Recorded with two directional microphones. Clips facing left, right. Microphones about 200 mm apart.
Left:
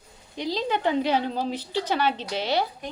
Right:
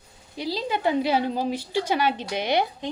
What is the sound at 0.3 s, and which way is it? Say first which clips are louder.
A woman's voice: left 1 dB; 10° right (ahead or behind).